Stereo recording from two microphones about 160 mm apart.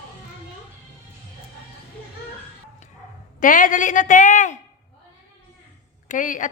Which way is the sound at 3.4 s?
55° left (ahead or behind).